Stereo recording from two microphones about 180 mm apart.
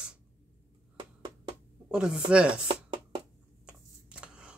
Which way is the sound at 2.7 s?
25° right (ahead or behind).